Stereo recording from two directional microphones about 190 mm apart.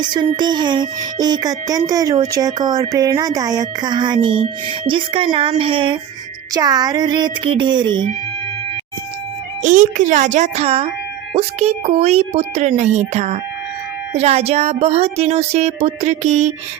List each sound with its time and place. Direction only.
0.0 s speech: 25° right (ahead or behind)
9.6 s speech: 45° right (ahead or behind)